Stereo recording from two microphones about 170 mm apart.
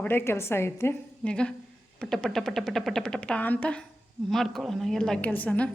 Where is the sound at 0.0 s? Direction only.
10° left (ahead or behind).